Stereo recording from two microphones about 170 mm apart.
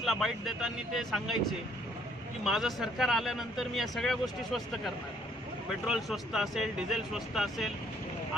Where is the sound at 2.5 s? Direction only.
Centre (ahead or behind).